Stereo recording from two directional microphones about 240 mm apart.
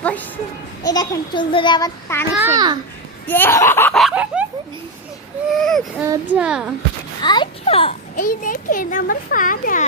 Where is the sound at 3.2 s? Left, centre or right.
Centre.